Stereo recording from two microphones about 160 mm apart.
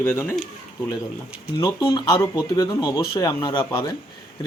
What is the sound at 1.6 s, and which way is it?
Speech, 25° left (ahead or behind).